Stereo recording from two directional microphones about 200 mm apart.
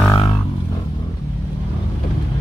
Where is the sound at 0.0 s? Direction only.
20° left (ahead or behind).